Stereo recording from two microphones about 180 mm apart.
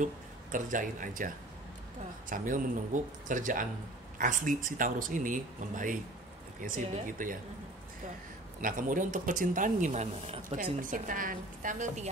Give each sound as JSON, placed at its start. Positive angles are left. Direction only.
{"t": 0.0, "sound": "speech", "side_deg": -45}
{"t": 8.5, "sound": "speech", "side_deg": -50}